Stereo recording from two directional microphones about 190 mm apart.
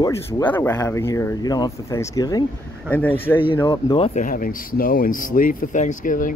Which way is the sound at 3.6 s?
25° left (ahead or behind).